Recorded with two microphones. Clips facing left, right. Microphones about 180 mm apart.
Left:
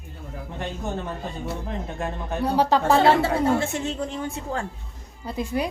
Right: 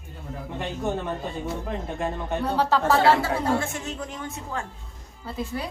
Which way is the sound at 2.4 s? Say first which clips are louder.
Left 3 dB; 15° left (ahead or behind).